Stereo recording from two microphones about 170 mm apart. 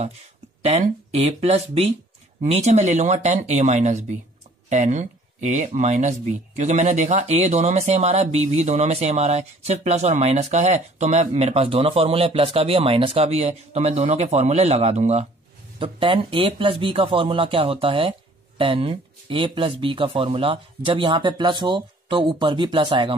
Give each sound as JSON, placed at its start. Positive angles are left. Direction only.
{"t": 0.6, "sound": "speech", "side_deg": -40}
{"t": 15.8, "sound": "speech", "side_deg": -30}